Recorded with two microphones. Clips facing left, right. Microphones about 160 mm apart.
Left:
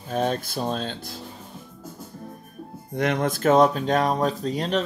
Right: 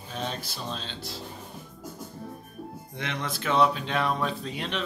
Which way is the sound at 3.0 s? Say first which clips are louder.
Left 11 dB; 50° left (ahead or behind).